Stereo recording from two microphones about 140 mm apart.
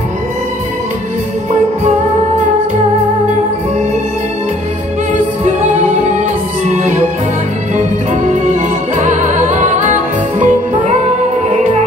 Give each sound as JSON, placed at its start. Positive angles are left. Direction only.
{"t": 6.1, "sound": "music", "side_deg": -60}